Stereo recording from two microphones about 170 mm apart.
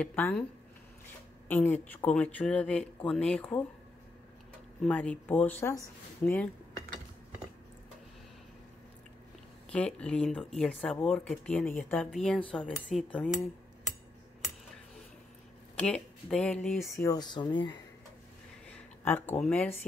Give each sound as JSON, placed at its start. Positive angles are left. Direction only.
{"t": 0.0, "sound": "speech", "side_deg": 10}
{"t": 1.5, "sound": "speech", "side_deg": 10}
{"t": 4.8, "sound": "speech", "side_deg": 5}
{"t": 9.7, "sound": "speech", "side_deg": 5}
{"t": 15.7, "sound": "speech", "side_deg": 5}
{"t": 16.8, "sound": "speech", "side_deg": 15}
{"t": 18.7, "sound": "speech", "side_deg": 10}